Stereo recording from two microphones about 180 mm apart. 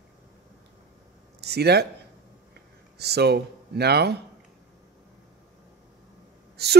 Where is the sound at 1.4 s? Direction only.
65° right (ahead or behind).